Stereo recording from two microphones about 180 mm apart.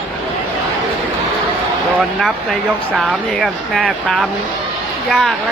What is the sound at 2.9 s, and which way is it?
Speech, centre (ahead or behind).